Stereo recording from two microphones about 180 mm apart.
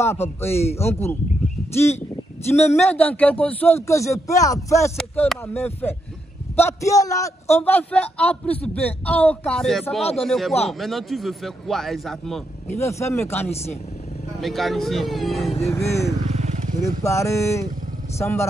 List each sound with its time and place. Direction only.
0.0 s a man's voice: 15° left (ahead or behind)
2.7 s a man's voice: 10° left (ahead or behind)
12.6 s a man's voice: 15° left (ahead or behind)
13.4 s speech: 35° left (ahead or behind)
14.4 s a man's voice: centre (ahead or behind)
15.6 s a man's voice: 15° left (ahead or behind)
16.3 s wild animals: 40° right (ahead or behind)
17.0 s a man's voice: 15° left (ahead or behind)